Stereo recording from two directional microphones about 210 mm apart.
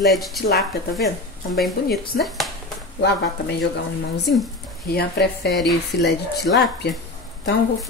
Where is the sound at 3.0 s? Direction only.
50° left (ahead or behind).